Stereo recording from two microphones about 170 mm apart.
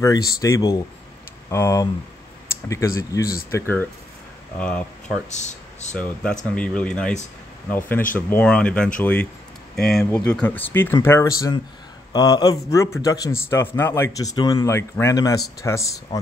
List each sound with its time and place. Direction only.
0.0 s a man's voice: 20° left (ahead or behind)
5.3 s speech: 45° left (ahead or behind)
6.5 s speech: 5° left (ahead or behind)
8.3 s a man's voice: 5° left (ahead or behind)